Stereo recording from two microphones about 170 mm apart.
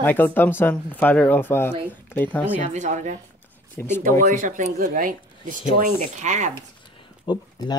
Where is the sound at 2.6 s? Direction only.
45° right (ahead or behind).